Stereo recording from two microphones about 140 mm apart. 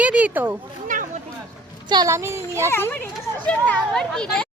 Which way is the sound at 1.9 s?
25° right (ahead or behind).